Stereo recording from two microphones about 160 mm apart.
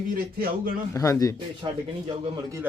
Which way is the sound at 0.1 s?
65° right (ahead or behind).